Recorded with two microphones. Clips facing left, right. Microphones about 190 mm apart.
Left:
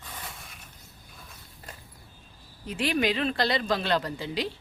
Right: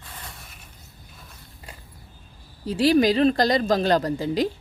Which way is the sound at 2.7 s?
35° right (ahead or behind).